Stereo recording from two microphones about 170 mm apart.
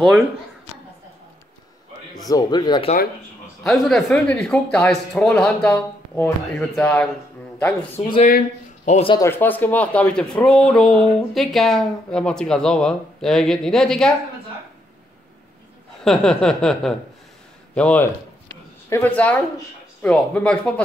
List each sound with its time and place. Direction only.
2.1 s speech: 20° left (ahead or behind)
3.8 s speech: 5° left (ahead or behind)
8.2 s speech: 50° left (ahead or behind)
9.1 s speech: 15° left (ahead or behind)
16.0 s speech: 5° left (ahead or behind)